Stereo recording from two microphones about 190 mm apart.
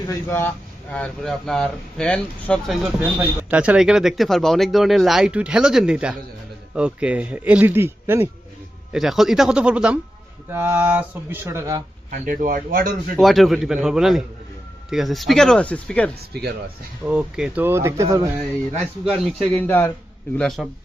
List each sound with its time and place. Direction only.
0.1 s speech: 15° left (ahead or behind); by 8.3 s 10° right (ahead or behind)
8.9 s speech: centre (ahead or behind)
12.1 s speech: 45° right (ahead or behind)
13.1 s speech: centre (ahead or behind)
16.3 s speech: 60° right (ahead or behind)
17.1 s speech: 5° right (ahead or behind)
19.2 s speech: 10° left (ahead or behind)